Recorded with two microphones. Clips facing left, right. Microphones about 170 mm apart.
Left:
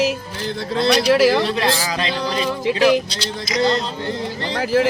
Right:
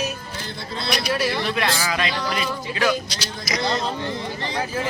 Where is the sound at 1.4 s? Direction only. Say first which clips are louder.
Left 4 dB; 35° left (ahead or behind).